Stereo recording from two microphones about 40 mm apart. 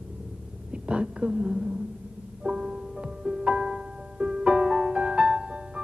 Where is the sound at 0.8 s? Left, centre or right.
Right.